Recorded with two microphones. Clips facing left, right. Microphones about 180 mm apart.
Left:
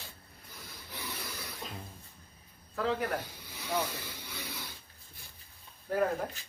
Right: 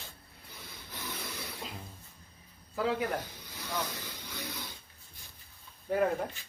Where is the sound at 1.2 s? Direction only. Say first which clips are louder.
Right 1 dB; centre (ahead or behind).